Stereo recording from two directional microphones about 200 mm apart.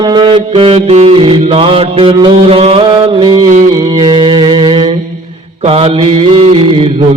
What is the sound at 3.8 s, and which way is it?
Mantra, 25° right (ahead or behind).